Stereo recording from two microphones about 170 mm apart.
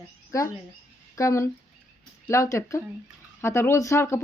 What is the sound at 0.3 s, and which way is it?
Speech, 20° left (ahead or behind).